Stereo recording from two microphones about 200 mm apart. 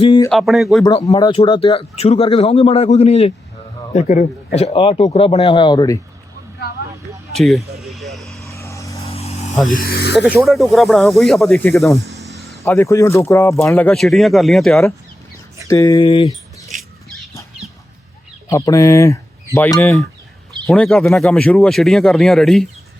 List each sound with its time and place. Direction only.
0.0 s a sound: 25° left (ahead or behind)
0.3 s speech: centre (ahead or behind)
1.0 s a man's voice: 20° left (ahead or behind)
7.3 s speech: centre (ahead or behind)
7.8 s vehicle: centre (ahead or behind)
8.4 s vehicle: 15° left (ahead or behind)
9.0 s a sound: 30° left (ahead or behind)
9.6 s speech: 45° left (ahead or behind)
10.3 s speech: centre (ahead or behind)
15.6 s speech: 15° left (ahead or behind)
16.7 s a sound: 40° right (ahead or behind)
18.4 s speech: 15° left (ahead or behind)